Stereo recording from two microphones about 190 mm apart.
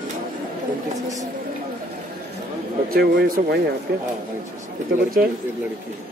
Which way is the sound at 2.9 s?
55° right (ahead or behind).